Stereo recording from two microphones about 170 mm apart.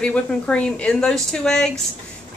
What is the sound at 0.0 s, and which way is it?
Speech, 5° left (ahead or behind).